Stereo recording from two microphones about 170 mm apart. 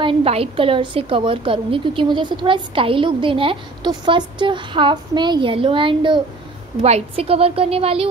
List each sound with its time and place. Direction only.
0.0 s a woman's voice: 35° right (ahead or behind)